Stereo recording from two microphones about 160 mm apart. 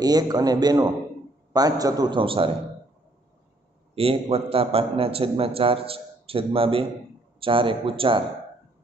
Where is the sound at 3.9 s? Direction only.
35° right (ahead or behind).